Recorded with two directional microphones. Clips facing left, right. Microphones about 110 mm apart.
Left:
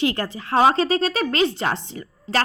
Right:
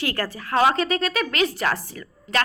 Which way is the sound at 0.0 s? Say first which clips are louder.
Left 4 dB; 20° left (ahead or behind).